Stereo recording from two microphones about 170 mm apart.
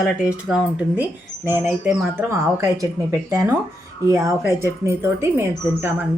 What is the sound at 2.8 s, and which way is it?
Speech, 15° right (ahead or behind).